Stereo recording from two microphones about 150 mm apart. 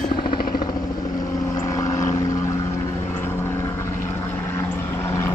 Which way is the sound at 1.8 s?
20° left (ahead or behind).